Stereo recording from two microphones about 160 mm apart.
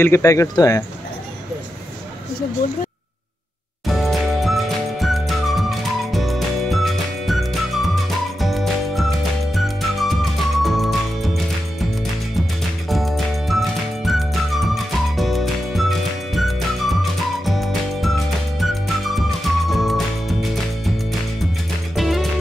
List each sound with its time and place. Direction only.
0.0 s speech: 15° left (ahead or behind)
3.8 s music: centre (ahead or behind)
12.9 s music: centre (ahead or behind)